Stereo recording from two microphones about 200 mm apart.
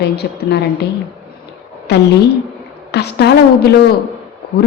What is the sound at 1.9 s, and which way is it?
A woman's voice, 55° left (ahead or behind).